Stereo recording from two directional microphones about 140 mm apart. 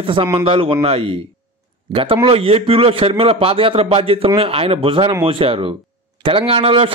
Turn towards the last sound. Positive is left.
turn(degrees=-40)  # may be behind; listen again after turning